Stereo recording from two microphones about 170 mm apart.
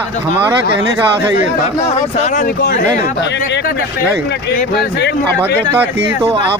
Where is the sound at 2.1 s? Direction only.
45° left (ahead or behind).